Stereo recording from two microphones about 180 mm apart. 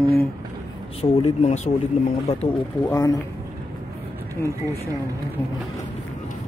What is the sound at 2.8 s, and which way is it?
Speech, 20° left (ahead or behind).